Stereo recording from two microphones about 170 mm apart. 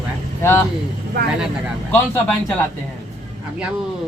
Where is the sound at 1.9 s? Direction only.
10° left (ahead or behind).